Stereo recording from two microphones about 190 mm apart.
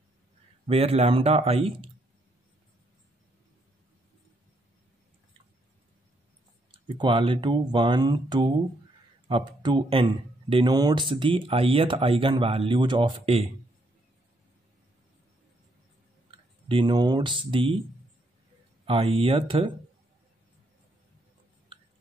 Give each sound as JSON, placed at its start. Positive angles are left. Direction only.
{"t": 0.7, "sound": "speech", "side_deg": -30}
{"t": 6.7, "sound": "speech", "side_deg": -25}
{"t": 16.3, "sound": "speech", "side_deg": -30}
{"t": 18.9, "sound": "speech", "side_deg": -30}